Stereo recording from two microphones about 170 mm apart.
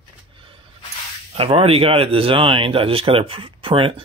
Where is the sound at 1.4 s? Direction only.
35° right (ahead or behind).